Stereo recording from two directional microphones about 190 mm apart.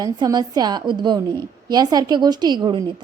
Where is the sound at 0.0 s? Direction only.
20° right (ahead or behind).